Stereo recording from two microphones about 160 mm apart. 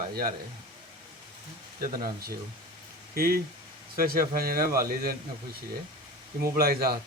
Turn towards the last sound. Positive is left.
turn(degrees=-70)  # may be behind; listen again after turning